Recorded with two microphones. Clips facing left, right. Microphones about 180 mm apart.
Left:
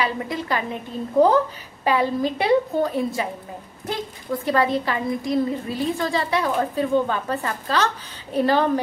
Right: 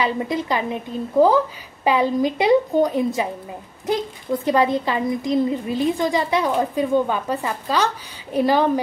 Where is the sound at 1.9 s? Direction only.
15° right (ahead or behind).